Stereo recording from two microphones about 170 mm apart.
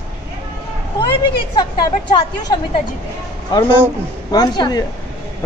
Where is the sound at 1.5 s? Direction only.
25° left (ahead or behind).